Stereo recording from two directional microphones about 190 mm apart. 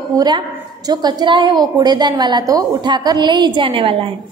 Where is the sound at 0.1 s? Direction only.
20° right (ahead or behind).